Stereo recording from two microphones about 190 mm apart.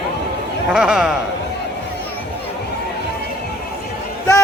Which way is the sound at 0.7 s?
5° right (ahead or behind).